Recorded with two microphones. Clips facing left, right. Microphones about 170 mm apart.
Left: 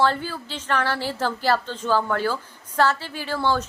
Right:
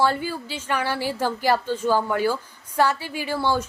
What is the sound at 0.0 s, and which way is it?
Speech, 10° right (ahead or behind).